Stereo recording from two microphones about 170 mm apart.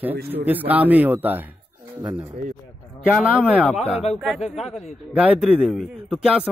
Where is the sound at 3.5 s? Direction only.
5° right (ahead or behind).